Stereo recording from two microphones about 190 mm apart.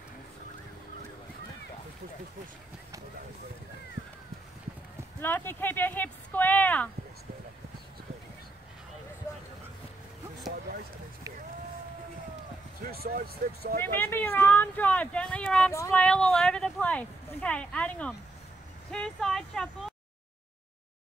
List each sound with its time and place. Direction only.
5.2 s speech: 10° left (ahead or behind)
12.8 s speech: 50° right (ahead or behind)
13.8 s speech: 10° left (ahead or behind)
18.9 s a sound: 5° left (ahead or behind)